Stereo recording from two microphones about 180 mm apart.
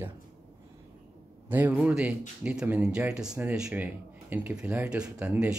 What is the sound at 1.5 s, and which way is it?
Speech, 10° right (ahead or behind).